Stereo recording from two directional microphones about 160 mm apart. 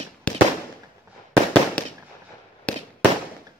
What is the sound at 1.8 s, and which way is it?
Fireworks, 10° left (ahead or behind).